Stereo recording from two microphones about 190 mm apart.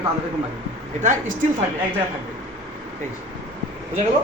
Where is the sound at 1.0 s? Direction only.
40° right (ahead or behind).